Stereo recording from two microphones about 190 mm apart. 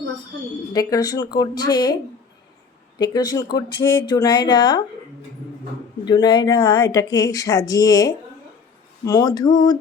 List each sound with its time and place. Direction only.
0.7 s speech: 20° left (ahead or behind)
3.0 s speech: 20° left (ahead or behind)
6.1 s speech: 25° left (ahead or behind)